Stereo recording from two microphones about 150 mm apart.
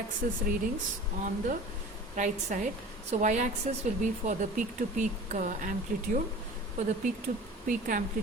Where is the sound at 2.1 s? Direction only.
55° right (ahead or behind).